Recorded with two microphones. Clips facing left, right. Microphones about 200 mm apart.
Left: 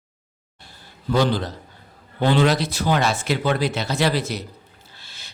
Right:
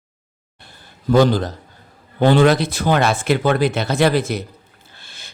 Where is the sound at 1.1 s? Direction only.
45° right (ahead or behind).